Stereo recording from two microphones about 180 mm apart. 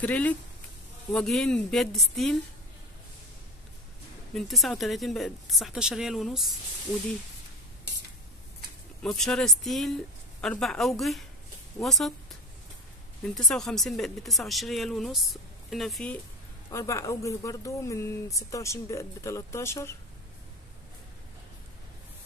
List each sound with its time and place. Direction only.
0.0 s speech: 10° left (ahead or behind)
4.3 s speech: centre (ahead or behind)
9.0 s speech: 5° left (ahead or behind)
13.2 s speech: centre (ahead or behind)
16.7 s speech: 15° left (ahead or behind)